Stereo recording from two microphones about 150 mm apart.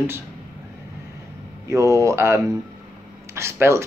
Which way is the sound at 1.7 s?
20° right (ahead or behind).